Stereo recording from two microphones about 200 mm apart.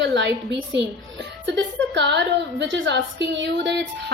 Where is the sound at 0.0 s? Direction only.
65° right (ahead or behind).